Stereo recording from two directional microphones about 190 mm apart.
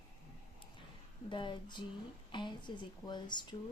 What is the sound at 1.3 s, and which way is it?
Speech, 25° left (ahead or behind).